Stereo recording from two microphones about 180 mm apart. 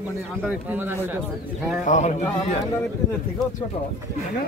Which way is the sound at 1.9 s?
40° left (ahead or behind).